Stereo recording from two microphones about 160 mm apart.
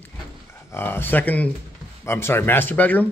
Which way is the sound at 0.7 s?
15° left (ahead or behind).